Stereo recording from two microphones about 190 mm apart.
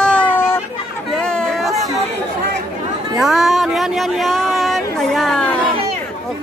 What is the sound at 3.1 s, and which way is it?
Speech, centre (ahead or behind).